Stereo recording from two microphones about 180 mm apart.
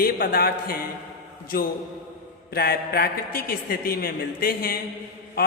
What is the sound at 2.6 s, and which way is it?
A man's voice, 60° left (ahead or behind).